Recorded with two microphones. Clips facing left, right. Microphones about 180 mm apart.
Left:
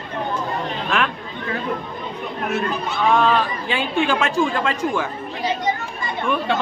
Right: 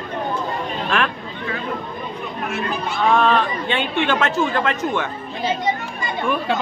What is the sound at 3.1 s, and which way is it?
Speech, centre (ahead or behind).